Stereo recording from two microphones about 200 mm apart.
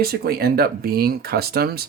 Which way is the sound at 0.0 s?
50° right (ahead or behind).